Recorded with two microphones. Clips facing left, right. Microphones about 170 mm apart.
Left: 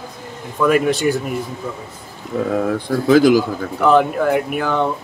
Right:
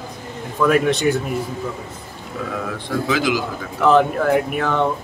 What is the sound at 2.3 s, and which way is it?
A man's voice, 50° left (ahead or behind).